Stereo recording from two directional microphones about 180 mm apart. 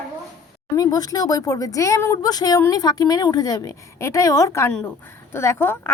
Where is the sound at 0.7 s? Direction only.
20° left (ahead or behind).